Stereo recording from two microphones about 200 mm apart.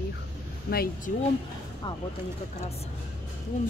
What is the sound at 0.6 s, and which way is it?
Speech, 50° left (ahead or behind).